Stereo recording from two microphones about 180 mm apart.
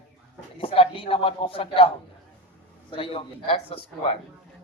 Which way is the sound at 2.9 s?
30° left (ahead or behind).